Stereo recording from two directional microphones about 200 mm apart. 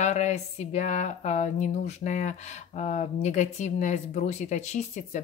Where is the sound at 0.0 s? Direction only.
35° left (ahead or behind).